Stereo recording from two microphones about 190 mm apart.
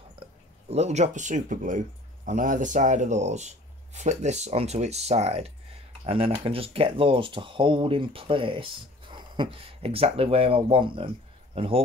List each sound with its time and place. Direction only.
0.7 s speech: 35° right (ahead or behind)